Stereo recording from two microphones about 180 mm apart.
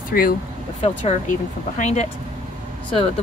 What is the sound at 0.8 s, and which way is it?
Speech, 40° left (ahead or behind).